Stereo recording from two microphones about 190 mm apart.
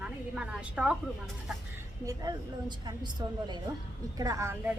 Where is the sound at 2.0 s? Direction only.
20° right (ahead or behind).